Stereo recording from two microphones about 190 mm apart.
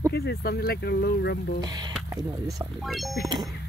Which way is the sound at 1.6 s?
20° right (ahead or behind).